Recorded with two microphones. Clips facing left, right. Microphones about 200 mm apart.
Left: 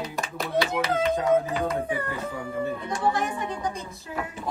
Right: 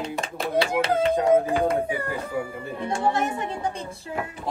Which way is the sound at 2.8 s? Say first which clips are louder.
Right 6 dB; 25° right (ahead or behind).